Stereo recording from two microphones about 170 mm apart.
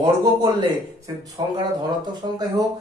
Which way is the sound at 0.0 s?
25° right (ahead or behind).